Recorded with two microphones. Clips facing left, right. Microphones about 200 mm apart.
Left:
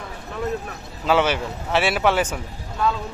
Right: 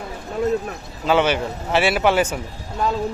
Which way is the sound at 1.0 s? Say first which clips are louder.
Right 2 dB; centre (ahead or behind).